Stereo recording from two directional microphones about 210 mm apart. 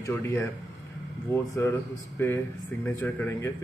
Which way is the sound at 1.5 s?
10° left (ahead or behind).